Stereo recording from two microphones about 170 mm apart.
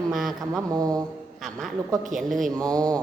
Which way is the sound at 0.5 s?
20° right (ahead or behind).